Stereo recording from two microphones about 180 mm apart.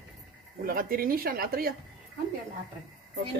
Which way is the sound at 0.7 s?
50° right (ahead or behind).